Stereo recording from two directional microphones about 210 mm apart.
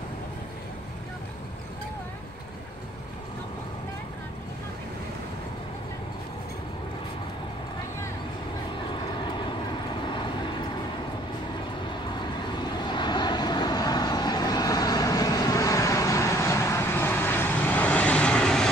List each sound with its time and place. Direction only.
10.0 s vehicle: 20° left (ahead or behind)
12.4 s vehicle: 20° left (ahead or behind); by 18.7 s 5° left (ahead or behind)